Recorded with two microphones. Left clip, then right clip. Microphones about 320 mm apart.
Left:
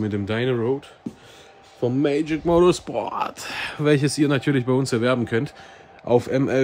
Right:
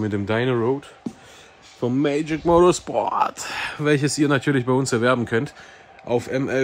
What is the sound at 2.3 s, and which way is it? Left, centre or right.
Speech, centre.